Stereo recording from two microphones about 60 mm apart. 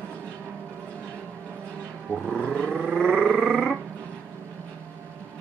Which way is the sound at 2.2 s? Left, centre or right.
Centre.